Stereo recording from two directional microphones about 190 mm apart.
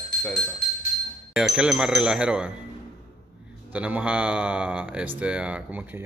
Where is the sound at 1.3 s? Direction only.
5° right (ahead or behind).